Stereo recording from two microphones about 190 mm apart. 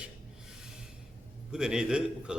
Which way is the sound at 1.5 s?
5° right (ahead or behind).